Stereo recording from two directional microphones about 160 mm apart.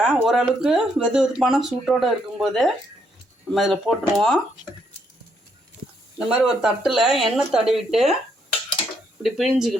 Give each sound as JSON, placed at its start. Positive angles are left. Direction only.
{"t": 0.0, "sound": "speech", "side_deg": -5}
{"t": 6.2, "sound": "speech", "side_deg": -5}
{"t": 9.2, "sound": "speech", "side_deg": 0}